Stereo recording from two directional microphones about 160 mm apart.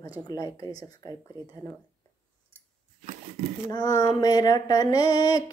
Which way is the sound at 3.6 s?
25° left (ahead or behind).